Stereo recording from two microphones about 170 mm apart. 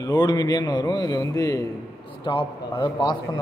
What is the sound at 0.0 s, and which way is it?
A man's voice, 25° left (ahead or behind).